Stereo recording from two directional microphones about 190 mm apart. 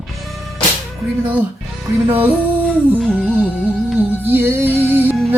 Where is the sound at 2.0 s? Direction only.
10° right (ahead or behind).